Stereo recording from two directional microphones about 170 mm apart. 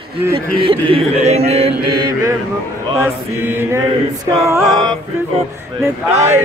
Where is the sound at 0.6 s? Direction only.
35° right (ahead or behind).